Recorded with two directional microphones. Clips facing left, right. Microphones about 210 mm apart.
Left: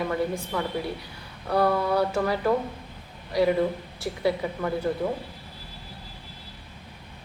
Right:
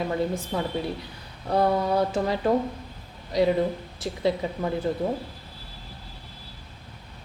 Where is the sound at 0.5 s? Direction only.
25° right (ahead or behind).